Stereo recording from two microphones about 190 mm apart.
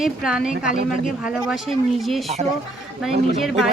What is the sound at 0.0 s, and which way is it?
A woman's voice, centre (ahead or behind).